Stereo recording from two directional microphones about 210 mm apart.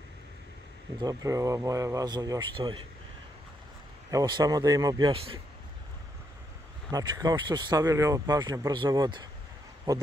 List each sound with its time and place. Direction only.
1.0 s speech: 15° right (ahead or behind)
4.1 s speech: 15° right (ahead or behind)
6.9 s speech: 15° right (ahead or behind)